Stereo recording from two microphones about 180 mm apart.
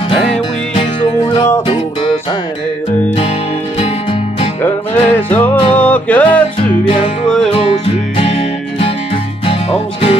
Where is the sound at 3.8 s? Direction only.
30° left (ahead or behind).